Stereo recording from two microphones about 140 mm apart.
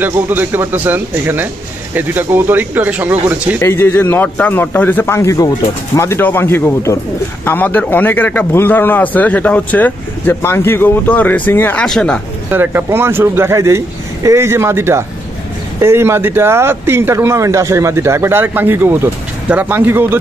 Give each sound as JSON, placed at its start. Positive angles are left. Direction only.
{"t": 0.0, "sound": "speech", "side_deg": -15}
{"t": 3.6, "sound": "a man's voice", "side_deg": 15}
{"t": 12.4, "sound": "speech", "side_deg": -15}